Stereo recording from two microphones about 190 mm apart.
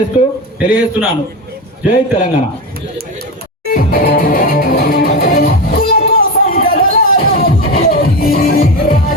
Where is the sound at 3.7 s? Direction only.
50° left (ahead or behind).